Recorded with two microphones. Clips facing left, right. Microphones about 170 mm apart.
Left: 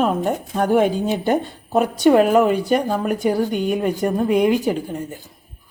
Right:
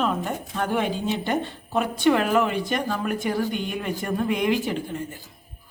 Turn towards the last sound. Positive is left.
turn(degrees=40)  # may be behind; listen again after turning